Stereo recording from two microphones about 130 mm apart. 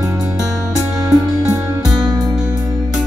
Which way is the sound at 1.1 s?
5° right (ahead or behind).